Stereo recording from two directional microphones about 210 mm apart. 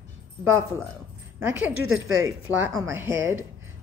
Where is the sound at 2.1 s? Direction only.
70° right (ahead or behind).